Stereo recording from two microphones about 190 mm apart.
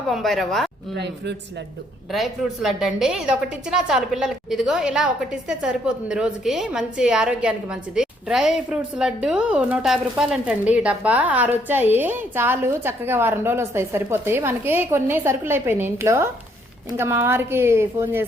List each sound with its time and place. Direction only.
0.1 s a woman's voice: centre (ahead or behind)
0.9 s speech: 65° right (ahead or behind)
2.1 s a woman's voice: centre (ahead or behind)